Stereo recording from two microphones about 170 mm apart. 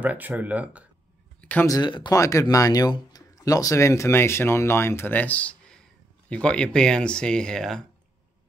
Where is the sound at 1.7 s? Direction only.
25° left (ahead or behind); by 7.8 s 5° left (ahead or behind).